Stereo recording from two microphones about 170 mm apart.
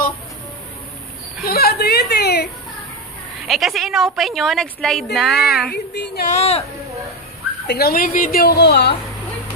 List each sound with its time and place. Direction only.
1.4 s a woman's voice: 65° left (ahead or behind)
3.4 s speech: centre (ahead or behind)
5.7 s female singing: 80° left
6.3 s speech: 40° left (ahead or behind)
7.6 s a woman's voice: 65° left (ahead or behind)